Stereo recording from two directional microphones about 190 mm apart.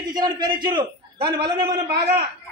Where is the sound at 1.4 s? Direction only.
60° right (ahead or behind).